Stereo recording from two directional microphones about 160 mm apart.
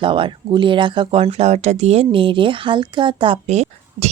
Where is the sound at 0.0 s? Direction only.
30° right (ahead or behind).